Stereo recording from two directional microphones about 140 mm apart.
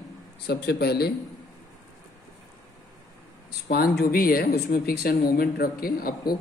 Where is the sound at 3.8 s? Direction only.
90° left.